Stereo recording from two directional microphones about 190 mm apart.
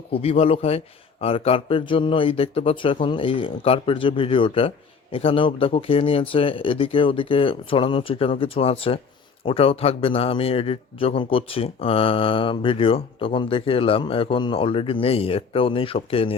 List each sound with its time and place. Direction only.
0.1 s a man's voice: 30° left (ahead or behind)